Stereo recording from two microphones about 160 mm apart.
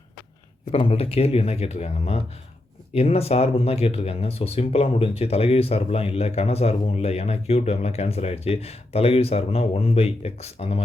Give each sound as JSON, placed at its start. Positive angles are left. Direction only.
{"t": 0.7, "sound": "speech", "side_deg": 40}